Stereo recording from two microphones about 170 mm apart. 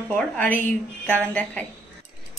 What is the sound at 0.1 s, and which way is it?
Speech, 5° left (ahead or behind).